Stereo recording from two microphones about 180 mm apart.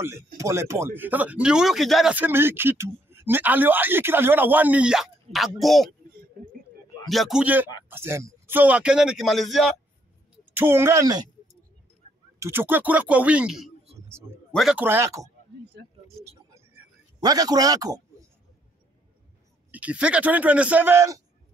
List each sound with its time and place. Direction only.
0.4 s a man's voice: 15° right (ahead or behind); by 5.9 s centre (ahead or behind)
7.1 s speech: centre (ahead or behind)
10.4 s speech: 10° right (ahead or behind)
12.4 s a man's voice: 15° right (ahead or behind)
16.3 s a sound: 15° right (ahead or behind)
19.7 s a man's voice: 5° right (ahead or behind)